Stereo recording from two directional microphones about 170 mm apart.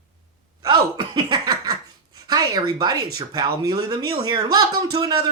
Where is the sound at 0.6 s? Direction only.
25° right (ahead or behind).